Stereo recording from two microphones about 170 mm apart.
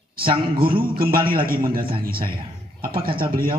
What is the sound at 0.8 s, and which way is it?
A man's voice, 60° right (ahead or behind).